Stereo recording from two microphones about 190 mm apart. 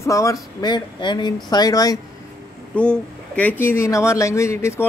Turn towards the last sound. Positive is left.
turn(degrees=15)  # may be behind; listen again after turning